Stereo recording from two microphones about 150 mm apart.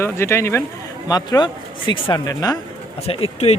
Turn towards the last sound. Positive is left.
turn(degrees=40)  # may be behind; listen again after turning